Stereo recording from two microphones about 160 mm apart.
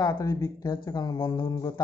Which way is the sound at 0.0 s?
25° left (ahead or behind).